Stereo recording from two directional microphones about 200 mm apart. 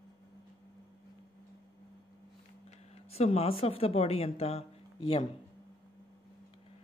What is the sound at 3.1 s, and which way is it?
Speech, 30° left (ahead or behind).